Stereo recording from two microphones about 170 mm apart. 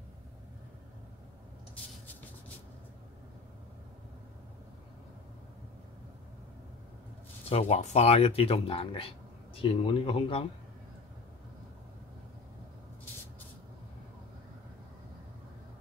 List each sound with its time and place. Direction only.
7.4 s speech: 35° left (ahead or behind)